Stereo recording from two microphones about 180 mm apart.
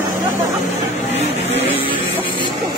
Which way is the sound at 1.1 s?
30° left (ahead or behind).